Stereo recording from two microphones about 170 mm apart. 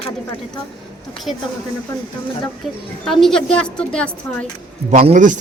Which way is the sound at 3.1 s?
Centre (ahead or behind).